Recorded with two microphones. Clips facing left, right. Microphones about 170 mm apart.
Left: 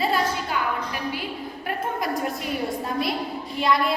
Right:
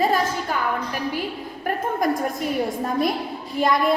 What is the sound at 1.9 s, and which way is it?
Speech, 45° right (ahead or behind).